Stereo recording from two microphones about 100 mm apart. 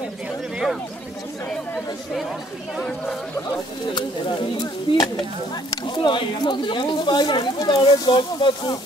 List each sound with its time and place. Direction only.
3.9 s speech: 50° left (ahead or behind)